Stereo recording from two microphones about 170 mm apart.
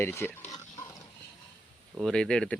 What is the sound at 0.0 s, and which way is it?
Speech, 15° left (ahead or behind).